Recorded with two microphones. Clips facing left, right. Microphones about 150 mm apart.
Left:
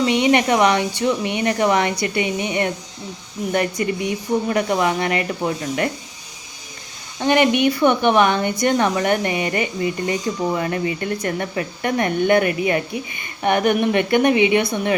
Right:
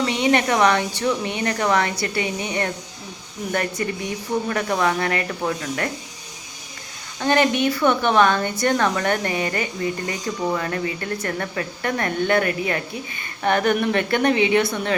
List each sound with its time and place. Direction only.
0.0 s speech: 20° left (ahead or behind)
7.2 s speech: 15° left (ahead or behind)